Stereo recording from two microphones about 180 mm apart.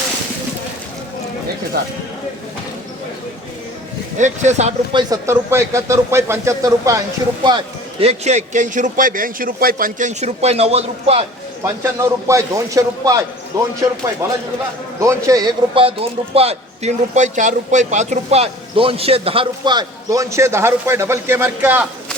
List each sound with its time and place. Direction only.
1.7 s a man's voice: 60° right (ahead or behind)
4.2 s a man's voice: 40° right (ahead or behind)
4.9 s a man's voice: 25° right (ahead or behind)
11.6 s a man's voice: 15° right (ahead or behind)